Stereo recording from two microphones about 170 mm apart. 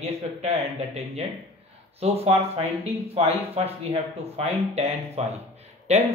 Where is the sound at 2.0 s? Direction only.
35° right (ahead or behind).